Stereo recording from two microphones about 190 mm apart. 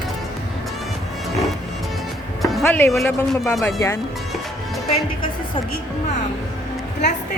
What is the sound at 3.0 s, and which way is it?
Speech, centre (ahead or behind).